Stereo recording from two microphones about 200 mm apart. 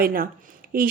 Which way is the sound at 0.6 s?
45° right (ahead or behind).